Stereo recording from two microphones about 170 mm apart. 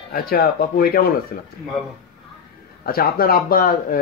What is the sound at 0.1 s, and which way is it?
Speech, 60° left (ahead or behind).